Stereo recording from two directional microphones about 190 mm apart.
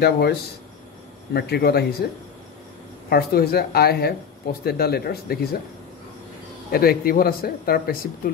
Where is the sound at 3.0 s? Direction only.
55° left (ahead or behind).